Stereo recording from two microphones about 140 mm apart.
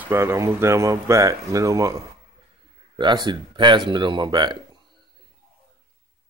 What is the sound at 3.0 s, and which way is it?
Speech, 35° right (ahead or behind).